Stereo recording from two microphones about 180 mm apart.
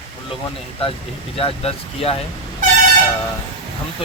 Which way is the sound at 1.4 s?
30° left (ahead or behind).